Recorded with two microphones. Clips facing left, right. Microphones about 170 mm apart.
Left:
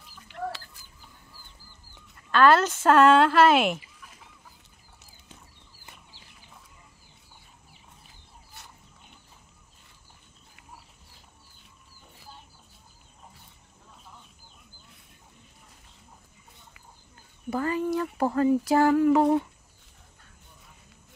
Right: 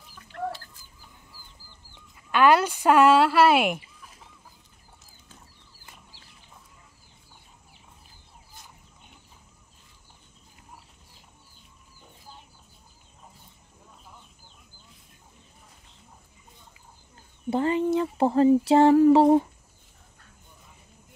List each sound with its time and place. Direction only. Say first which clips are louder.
2.1 s speech: even; 15° right (ahead or behind)
8.6 s chicken: left 1 dB; 70° left (ahead or behind)
17.5 s a sound: right 4 dB; 25° right (ahead or behind)